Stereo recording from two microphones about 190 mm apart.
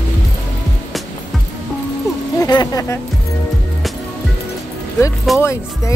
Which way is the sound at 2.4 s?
20° left (ahead or behind).